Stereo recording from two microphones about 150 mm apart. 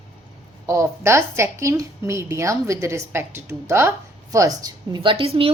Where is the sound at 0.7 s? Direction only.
20° right (ahead or behind).